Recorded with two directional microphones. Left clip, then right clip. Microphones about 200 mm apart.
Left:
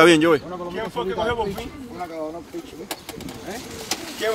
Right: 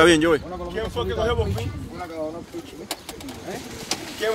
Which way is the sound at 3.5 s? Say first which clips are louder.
Even; 60° left (ahead or behind).